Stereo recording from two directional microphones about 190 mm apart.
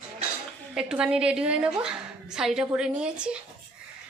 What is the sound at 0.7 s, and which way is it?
A woman's voice, 5° right (ahead or behind).